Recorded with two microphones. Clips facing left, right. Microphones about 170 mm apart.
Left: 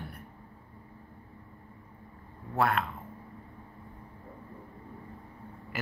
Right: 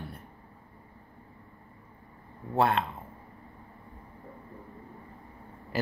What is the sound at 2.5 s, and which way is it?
Speech, 25° right (ahead or behind).